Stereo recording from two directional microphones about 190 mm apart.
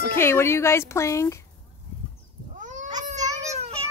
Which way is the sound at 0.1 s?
10° left (ahead or behind).